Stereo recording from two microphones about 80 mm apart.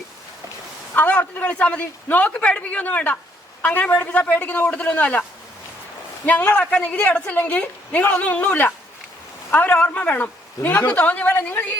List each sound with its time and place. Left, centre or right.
0.9 s a man's voice: centre
6.2 s a woman's voice: centre